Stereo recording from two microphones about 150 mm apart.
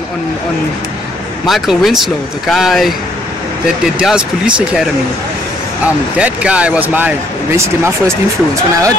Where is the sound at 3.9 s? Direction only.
5° right (ahead or behind).